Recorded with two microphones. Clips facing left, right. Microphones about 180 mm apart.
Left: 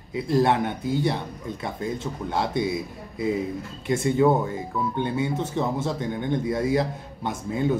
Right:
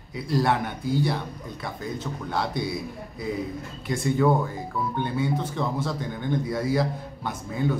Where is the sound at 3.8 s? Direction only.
25° left (ahead or behind).